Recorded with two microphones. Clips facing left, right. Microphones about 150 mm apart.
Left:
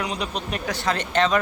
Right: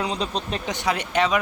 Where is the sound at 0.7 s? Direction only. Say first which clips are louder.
Even; 15° right (ahead or behind).